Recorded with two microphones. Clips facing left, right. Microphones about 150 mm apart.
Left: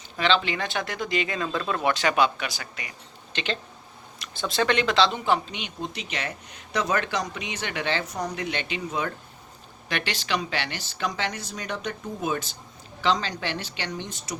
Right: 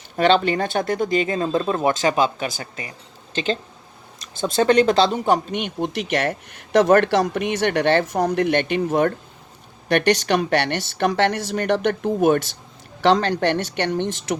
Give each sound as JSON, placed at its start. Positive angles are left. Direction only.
{"t": 0.2, "sound": "speech", "side_deg": -50}